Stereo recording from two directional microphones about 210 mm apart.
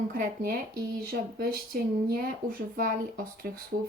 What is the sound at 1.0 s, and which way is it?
Speech, 45° right (ahead or behind).